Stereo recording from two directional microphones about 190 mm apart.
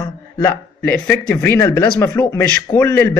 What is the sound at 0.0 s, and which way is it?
A man's voice, 10° left (ahead or behind).